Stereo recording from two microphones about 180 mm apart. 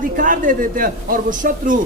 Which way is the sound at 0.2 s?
50° right (ahead or behind).